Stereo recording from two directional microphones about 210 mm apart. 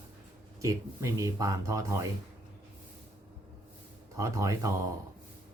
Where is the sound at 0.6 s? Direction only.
15° right (ahead or behind).